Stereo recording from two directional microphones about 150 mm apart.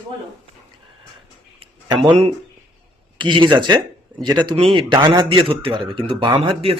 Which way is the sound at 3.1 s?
30° right (ahead or behind).